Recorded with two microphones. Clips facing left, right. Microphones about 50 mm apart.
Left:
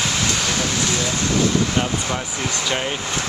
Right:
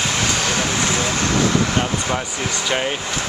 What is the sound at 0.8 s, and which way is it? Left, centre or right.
Speech, right.